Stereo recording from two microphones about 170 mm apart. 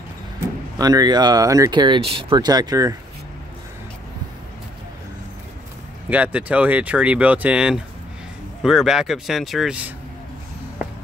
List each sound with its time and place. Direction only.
0.7 s speech: 20° right (ahead or behind)
6.0 s speech: 10° right (ahead or behind)